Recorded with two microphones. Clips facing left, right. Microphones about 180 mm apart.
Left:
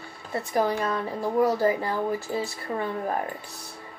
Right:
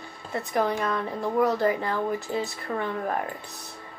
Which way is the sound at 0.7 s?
35° left (ahead or behind).